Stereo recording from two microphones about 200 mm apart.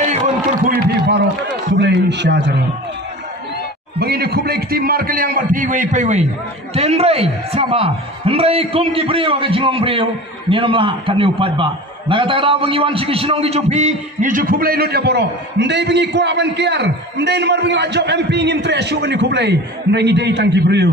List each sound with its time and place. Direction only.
0.7 s a sound: 55° right (ahead or behind)
1.8 s a man's voice: 60° right (ahead or behind)
4.0 s a man's voice: 55° right (ahead or behind)